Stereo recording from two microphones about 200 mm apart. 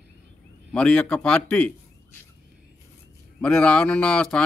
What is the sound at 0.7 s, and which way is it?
Speech, 5° left (ahead or behind).